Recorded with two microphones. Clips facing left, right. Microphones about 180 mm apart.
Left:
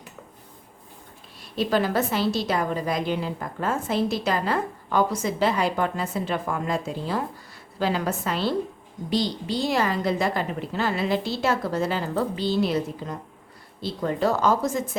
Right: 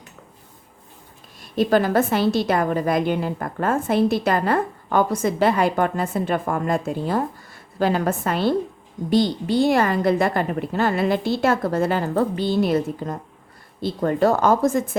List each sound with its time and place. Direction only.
1.4 s a woman's voice: 50° right (ahead or behind)